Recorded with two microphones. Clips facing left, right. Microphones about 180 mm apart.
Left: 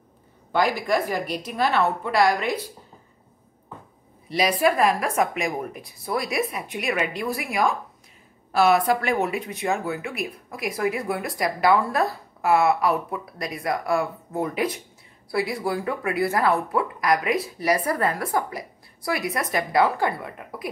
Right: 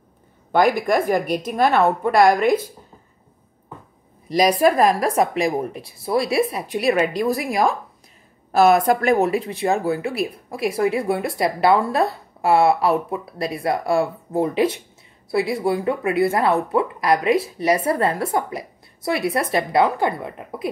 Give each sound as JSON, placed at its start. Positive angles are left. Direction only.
{"t": 0.5, "sound": "a woman's voice", "side_deg": -55}
{"t": 4.3, "sound": "speech", "side_deg": -40}